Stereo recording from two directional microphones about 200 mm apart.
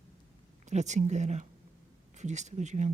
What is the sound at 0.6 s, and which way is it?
Speech, 35° right (ahead or behind).